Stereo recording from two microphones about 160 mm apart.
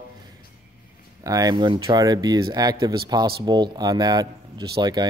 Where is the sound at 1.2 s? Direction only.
25° right (ahead or behind).